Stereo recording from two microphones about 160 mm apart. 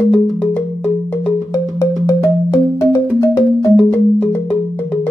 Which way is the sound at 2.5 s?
15° left (ahead or behind).